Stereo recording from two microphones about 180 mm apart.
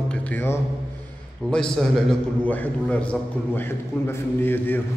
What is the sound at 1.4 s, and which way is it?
A man's voice, 5° left (ahead or behind).